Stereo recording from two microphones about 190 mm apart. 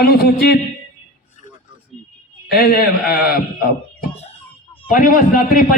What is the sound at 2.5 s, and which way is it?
A man's voice, 50° left (ahead or behind).